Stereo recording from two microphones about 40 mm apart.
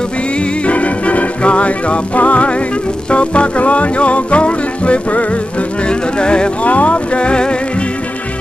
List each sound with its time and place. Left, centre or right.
0.7 s music: left
6.6 s boat: left